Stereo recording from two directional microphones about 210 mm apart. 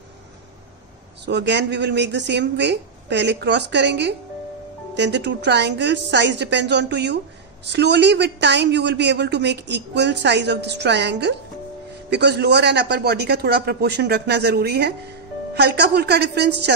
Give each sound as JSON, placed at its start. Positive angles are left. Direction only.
{"t": 1.2, "sound": "a man's voice", "side_deg": -55}